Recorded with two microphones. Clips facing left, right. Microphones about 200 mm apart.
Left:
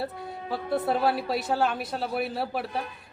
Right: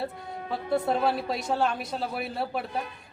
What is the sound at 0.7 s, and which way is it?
A man's voice, 5° left (ahead or behind).